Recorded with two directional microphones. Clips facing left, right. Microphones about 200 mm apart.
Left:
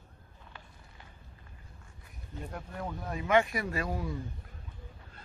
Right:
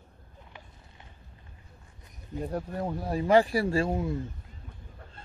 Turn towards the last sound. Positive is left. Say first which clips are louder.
# right 7 dB
turn(degrees=-25)  # may be behind; listen again after turning